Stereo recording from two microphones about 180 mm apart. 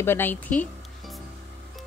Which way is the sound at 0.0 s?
10° left (ahead or behind).